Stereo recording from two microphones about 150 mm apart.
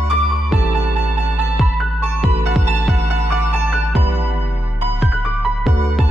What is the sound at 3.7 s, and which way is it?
Music, centre (ahead or behind).